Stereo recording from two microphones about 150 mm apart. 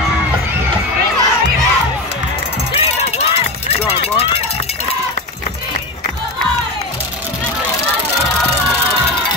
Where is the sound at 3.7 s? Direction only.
45° left (ahead or behind).